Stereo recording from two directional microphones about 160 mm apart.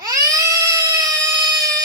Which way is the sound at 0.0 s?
20° right (ahead or behind).